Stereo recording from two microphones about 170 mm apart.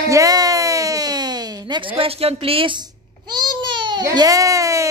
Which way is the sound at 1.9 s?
35° right (ahead or behind).